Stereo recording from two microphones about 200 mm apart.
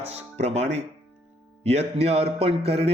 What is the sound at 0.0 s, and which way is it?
Speech, 30° right (ahead or behind).